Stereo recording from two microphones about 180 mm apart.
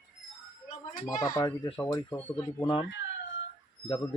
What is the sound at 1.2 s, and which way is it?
Speech, 20° left (ahead or behind).